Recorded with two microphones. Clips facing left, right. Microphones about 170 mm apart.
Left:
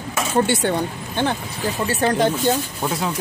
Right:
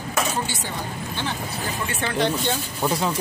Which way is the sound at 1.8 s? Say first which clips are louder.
Left 5 dB; 40° left (ahead or behind).